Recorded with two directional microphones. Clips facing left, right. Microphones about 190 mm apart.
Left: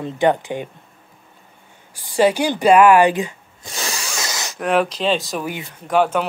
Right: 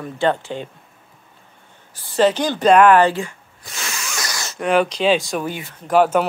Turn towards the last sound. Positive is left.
turn(degrees=0)  # may be behind; listen again after turning